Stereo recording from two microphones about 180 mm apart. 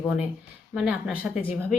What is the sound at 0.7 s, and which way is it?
Speech, 5° right (ahead or behind).